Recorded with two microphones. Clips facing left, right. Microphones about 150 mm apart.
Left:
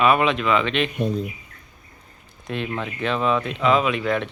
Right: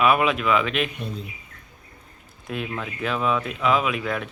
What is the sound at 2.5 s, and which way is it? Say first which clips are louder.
Speech: left 3 dB; 5° right (ahead or behind).